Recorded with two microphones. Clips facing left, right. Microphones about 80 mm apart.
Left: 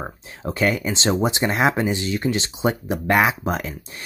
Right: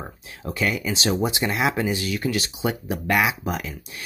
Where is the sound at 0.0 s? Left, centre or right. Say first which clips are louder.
Left 4 dB; left.